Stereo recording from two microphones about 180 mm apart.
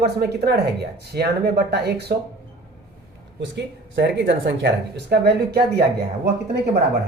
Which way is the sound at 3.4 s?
70° right (ahead or behind).